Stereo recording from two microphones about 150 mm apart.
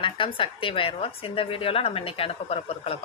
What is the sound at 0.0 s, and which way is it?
A woman's voice, 35° left (ahead or behind).